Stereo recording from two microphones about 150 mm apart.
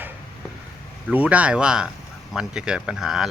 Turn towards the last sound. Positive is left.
turn(degrees=0)  # may be behind; listen again after turning